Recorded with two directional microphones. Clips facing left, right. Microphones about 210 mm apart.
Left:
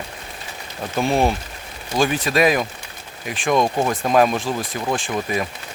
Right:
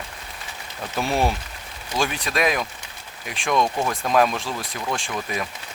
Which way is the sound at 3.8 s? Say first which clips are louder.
Left 4 dB; 20° left (ahead or behind).